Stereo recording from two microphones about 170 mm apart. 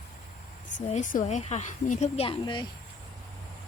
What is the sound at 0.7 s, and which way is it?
A woman's voice, 45° left (ahead or behind).